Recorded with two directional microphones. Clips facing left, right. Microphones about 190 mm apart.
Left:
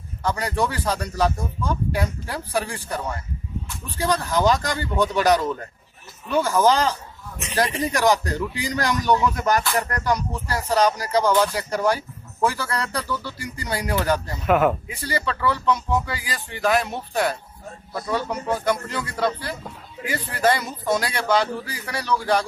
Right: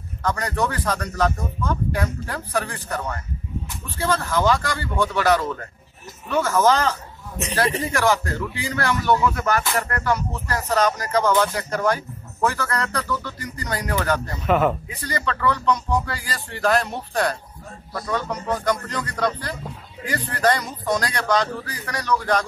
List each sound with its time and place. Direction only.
0.2 s speech: 10° left (ahead or behind)